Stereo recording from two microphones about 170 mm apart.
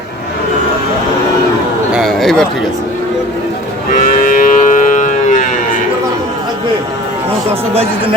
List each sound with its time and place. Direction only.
1.9 s a sound: centre (ahead or behind)
3.9 s moo: 50° left (ahead or behind)
7.7 s speech: 35° right (ahead or behind)